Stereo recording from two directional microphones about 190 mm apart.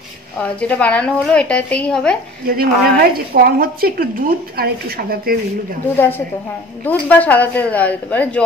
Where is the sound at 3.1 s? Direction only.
50° right (ahead or behind).